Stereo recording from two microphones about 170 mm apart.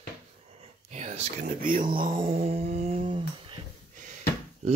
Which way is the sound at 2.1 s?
35° right (ahead or behind).